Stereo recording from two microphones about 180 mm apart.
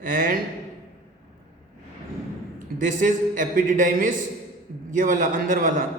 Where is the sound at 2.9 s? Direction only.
45° right (ahead or behind).